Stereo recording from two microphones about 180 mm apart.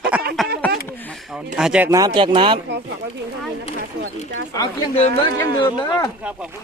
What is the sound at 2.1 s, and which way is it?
Speech, 30° right (ahead or behind).